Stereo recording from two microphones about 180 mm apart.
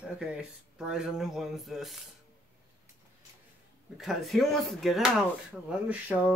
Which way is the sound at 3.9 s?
Centre (ahead or behind).